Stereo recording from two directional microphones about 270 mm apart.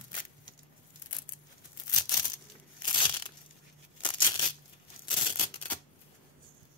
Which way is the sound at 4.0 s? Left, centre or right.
Centre.